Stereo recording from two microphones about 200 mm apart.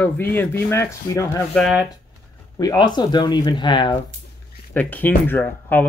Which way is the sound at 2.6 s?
20° left (ahead or behind).